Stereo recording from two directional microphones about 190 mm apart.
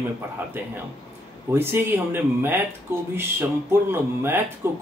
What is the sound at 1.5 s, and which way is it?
Speech, 10° right (ahead or behind).